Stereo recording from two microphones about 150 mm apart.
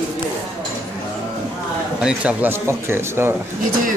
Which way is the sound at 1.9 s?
5° right (ahead or behind).